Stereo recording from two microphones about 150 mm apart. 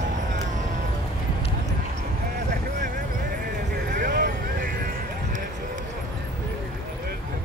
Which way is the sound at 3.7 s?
70° right (ahead or behind).